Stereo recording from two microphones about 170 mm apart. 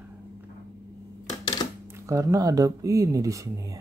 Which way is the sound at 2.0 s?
20° right (ahead or behind).